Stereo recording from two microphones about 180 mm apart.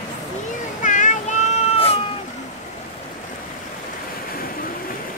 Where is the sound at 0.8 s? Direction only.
45° left (ahead or behind).